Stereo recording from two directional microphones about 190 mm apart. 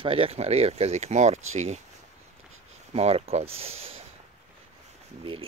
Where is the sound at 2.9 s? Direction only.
30° right (ahead or behind).